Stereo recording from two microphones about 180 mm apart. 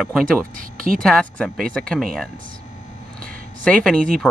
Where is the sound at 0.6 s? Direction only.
50° right (ahead or behind).